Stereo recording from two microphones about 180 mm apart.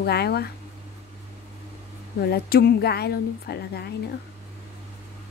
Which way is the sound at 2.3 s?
60° left (ahead or behind).